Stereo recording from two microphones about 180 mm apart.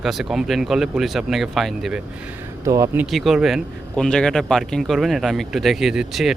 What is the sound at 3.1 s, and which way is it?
A man's voice, centre (ahead or behind).